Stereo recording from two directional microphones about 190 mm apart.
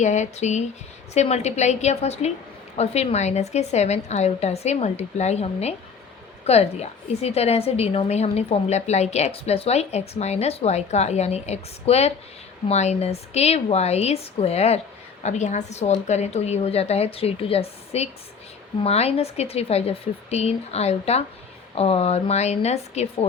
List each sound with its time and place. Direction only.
0.0 s a woman's voice: 40° left (ahead or behind)